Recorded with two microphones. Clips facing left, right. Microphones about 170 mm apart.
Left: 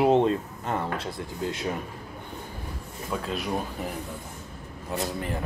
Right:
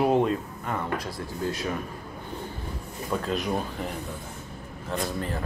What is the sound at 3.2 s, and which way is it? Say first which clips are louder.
Speech: right 4 dB; centre (ahead or behind).